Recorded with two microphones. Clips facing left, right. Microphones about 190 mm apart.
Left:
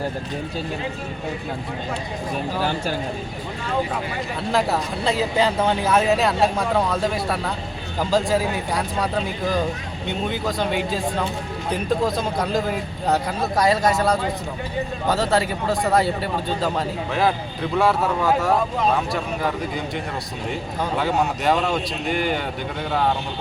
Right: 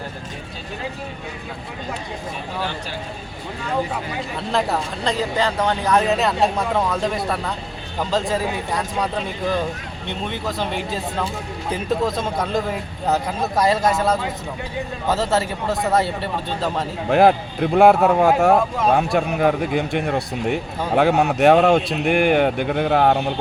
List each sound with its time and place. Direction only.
4.5 s speech: 5° left (ahead or behind)
10.1 s speech: 5° left (ahead or behind)
17.1 s speech: 60° right (ahead or behind)